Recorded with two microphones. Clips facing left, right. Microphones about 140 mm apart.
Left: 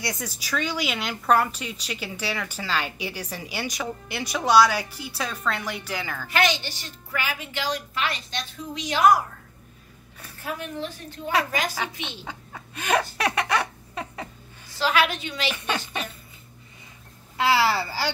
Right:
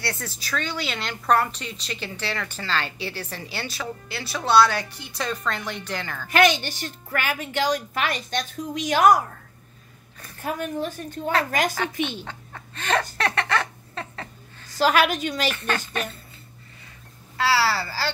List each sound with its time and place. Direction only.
0.0 s speech: 10° left (ahead or behind)
6.3 s a woman's voice: 50° right (ahead or behind)
10.4 s a woman's voice: 45° right (ahead or behind)
11.7 s speech: 10° left (ahead or behind)
14.8 s a woman's voice: 45° right (ahead or behind)
15.5 s speech: 15° left (ahead or behind)
17.4 s speech: 20° left (ahead or behind)